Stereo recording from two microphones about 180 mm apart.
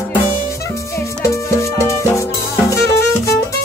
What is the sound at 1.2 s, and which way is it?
Music, 15° left (ahead or behind).